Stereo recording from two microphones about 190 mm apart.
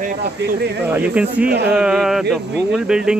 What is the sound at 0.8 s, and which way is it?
Speech, 10° right (ahead or behind).